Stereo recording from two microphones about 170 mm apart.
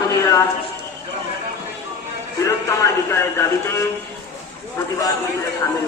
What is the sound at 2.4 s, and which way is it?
Speech, 15° left (ahead or behind).